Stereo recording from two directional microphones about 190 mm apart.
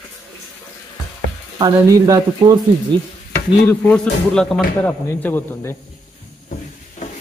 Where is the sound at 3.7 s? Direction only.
5° left (ahead or behind).